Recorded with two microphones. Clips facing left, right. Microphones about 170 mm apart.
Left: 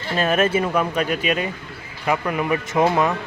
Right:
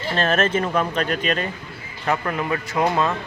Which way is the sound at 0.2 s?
10° left (ahead or behind).